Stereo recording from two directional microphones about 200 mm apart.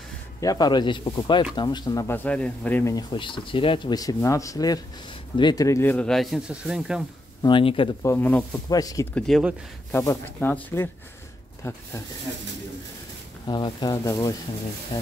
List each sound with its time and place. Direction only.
0.4 s speech: 20° left (ahead or behind); by 7.0 s 5° right (ahead or behind)
7.4 s speech: 25° left (ahead or behind)
8.0 s speech: 10° left (ahead or behind)
9.1 s speech: centre (ahead or behind)
9.8 s speech: 10° left (ahead or behind)
13.5 s speech: 20° left (ahead or behind)